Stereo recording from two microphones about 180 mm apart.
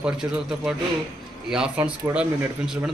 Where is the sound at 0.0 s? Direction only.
5° right (ahead or behind).